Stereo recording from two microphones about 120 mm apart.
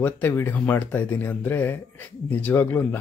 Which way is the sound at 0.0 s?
15° left (ahead or behind).